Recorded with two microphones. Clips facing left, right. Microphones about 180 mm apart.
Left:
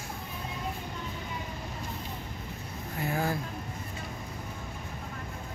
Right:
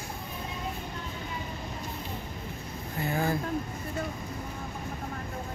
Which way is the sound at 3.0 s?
Centre (ahead or behind).